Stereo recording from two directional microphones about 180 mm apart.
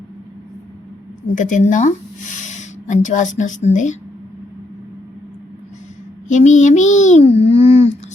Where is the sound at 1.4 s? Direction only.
45° left (ahead or behind).